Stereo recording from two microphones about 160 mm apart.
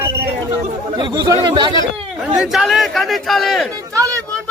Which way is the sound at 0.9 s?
30° right (ahead or behind).